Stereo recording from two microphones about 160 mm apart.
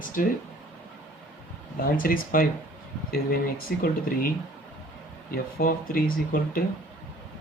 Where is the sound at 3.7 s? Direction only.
75° left (ahead or behind).